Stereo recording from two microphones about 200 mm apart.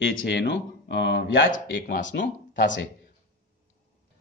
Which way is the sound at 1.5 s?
40° left (ahead or behind).